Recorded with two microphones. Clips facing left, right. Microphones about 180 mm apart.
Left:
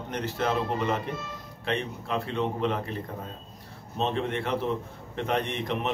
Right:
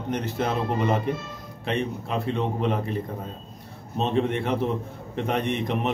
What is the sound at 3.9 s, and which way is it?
A man's voice, 20° right (ahead or behind).